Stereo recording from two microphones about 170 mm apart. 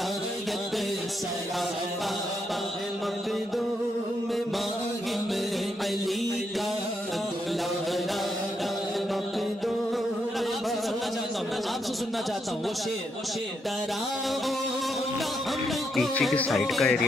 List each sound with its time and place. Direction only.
16.0 s music: 5° left (ahead or behind)